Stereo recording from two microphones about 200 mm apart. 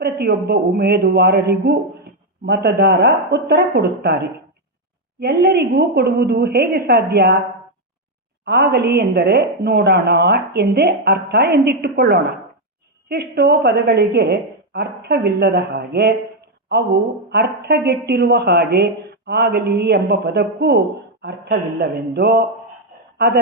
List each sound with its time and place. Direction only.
0.0 s a woman's voice: 50° right (ahead or behind)
8.4 s a woman's voice: 55° right (ahead or behind)
17.7 s a woman's voice: 55° right (ahead or behind)